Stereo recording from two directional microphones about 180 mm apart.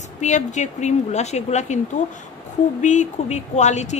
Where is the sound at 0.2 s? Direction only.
40° left (ahead or behind).